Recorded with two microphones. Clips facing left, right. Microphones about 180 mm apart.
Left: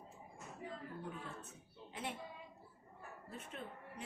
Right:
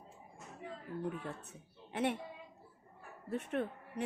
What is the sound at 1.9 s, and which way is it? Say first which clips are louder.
Speech: right 11 dB; 65° right (ahead or behind).